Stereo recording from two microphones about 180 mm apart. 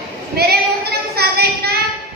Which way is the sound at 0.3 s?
60° right (ahead or behind).